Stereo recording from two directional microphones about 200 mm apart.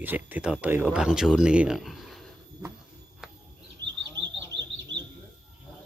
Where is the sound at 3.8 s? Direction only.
60° right (ahead or behind).